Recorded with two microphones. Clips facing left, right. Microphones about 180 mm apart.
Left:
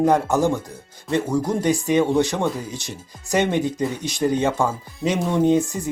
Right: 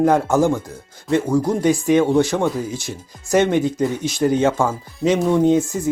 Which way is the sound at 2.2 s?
15° left (ahead or behind).